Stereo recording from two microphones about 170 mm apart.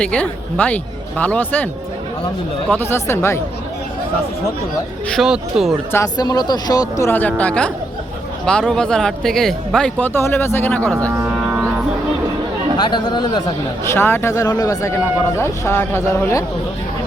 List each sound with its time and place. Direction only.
0.0 s speech: 5° left (ahead or behind)
2.9 s speech: 15° left (ahead or behind)
5.0 s speech: centre (ahead or behind)
5.9 s speech: 20° left (ahead or behind)
11.2 s a sound: 10° right (ahead or behind)
12.7 s speech: 25° left (ahead or behind)
13.8 s speech: 15° left (ahead or behind)